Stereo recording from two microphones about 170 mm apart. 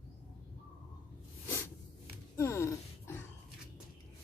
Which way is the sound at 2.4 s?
15° left (ahead or behind).